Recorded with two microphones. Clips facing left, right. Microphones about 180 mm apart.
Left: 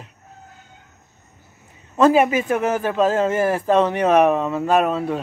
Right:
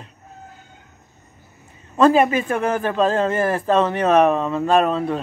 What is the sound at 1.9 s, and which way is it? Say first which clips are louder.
Speech: even; 10° left (ahead or behind).